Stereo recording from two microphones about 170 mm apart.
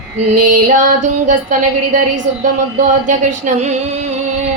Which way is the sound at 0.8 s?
50° right (ahead or behind).